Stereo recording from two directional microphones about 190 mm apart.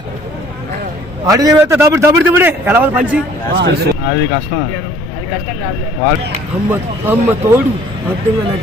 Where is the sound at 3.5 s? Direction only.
60° right (ahead or behind).